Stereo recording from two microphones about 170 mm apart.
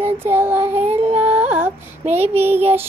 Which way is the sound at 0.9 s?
40° right (ahead or behind).